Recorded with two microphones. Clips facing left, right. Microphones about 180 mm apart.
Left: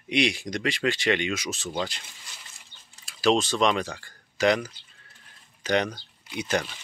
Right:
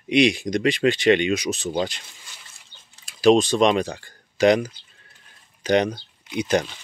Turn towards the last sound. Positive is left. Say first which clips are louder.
# right 6 dB
turn(degrees=-20)  # may be behind; listen again after turning